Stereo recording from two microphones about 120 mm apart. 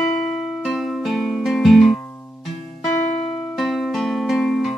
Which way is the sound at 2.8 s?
70° left (ahead or behind).